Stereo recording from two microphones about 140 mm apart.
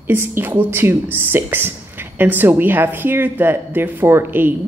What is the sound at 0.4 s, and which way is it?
A woman's voice, 15° right (ahead or behind).